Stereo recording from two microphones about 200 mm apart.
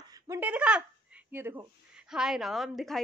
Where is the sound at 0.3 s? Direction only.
10° right (ahead or behind).